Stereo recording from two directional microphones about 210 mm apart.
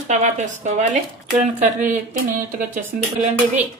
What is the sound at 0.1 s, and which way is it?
Speech, 35° right (ahead or behind).